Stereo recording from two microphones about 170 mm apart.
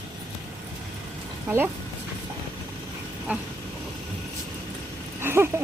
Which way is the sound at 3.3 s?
10° right (ahead or behind).